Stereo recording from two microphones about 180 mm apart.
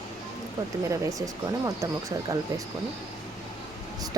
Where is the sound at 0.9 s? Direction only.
20° right (ahead or behind).